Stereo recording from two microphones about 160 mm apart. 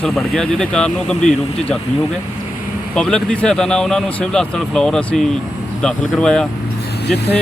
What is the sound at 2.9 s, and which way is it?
Speech, 5° left (ahead or behind).